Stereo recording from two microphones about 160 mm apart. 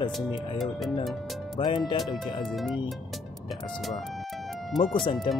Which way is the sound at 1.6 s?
30° left (ahead or behind).